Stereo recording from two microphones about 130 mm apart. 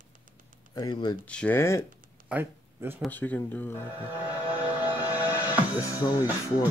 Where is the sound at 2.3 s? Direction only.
15° right (ahead or behind).